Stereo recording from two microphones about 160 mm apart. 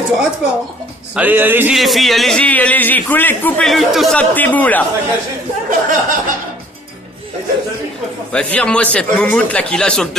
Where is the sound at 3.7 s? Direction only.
Centre (ahead or behind).